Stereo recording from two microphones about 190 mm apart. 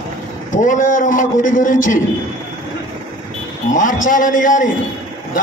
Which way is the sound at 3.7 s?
45° left (ahead or behind).